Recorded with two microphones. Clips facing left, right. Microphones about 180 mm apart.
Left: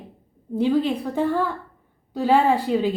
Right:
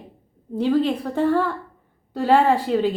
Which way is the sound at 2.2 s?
10° left (ahead or behind).